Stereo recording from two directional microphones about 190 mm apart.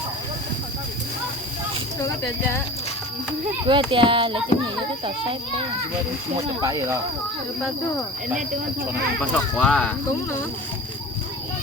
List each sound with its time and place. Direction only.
3.7 s a child's voice: 25° right (ahead or behind)
9.3 s speech: 5° left (ahead or behind)